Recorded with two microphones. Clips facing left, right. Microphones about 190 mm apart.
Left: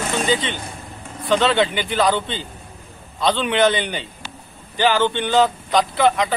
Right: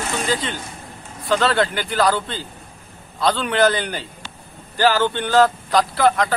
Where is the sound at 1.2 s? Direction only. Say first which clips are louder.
Left 1 dB; centre (ahead or behind).